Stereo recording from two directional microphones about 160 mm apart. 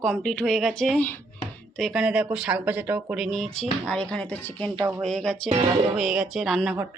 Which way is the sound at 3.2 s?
Centre (ahead or behind).